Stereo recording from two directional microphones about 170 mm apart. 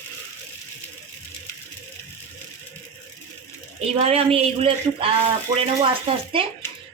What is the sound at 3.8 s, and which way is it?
A woman's voice, 35° right (ahead or behind).